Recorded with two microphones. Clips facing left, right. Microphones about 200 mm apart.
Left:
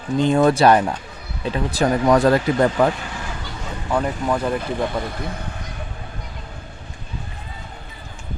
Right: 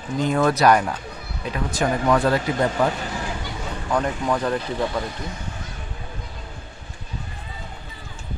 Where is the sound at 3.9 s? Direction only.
5° left (ahead or behind).